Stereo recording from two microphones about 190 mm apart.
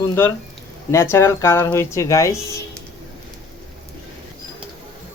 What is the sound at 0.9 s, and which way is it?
Speech, 15° left (ahead or behind).